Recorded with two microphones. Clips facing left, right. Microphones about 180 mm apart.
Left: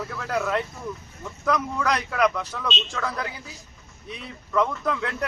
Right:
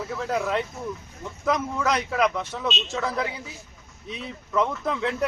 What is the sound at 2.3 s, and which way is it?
Speech, 25° right (ahead or behind).